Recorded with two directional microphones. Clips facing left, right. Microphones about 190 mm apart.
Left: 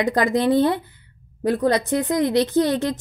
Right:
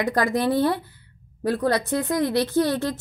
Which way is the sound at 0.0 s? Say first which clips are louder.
Left 3 dB; 20° left (ahead or behind).